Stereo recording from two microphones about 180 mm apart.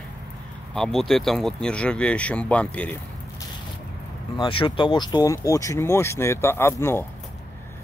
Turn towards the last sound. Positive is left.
turn(degrees=15)  # may be behind; listen again after turning